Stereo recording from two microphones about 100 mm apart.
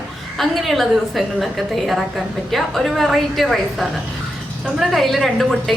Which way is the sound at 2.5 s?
Centre (ahead or behind).